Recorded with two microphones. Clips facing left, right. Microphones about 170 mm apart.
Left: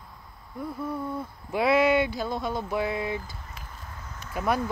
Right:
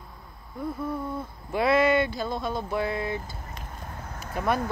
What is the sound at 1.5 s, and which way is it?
Speech, 10° left (ahead or behind).